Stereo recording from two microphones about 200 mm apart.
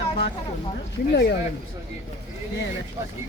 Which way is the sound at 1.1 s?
55° left (ahead or behind).